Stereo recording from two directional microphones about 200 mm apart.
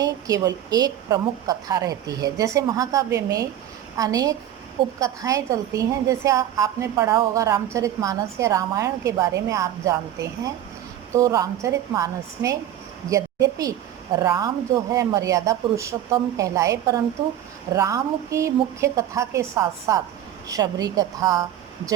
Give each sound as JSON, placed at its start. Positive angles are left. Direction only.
{"t": 0.0, "sound": "a woman's voice", "side_deg": -20}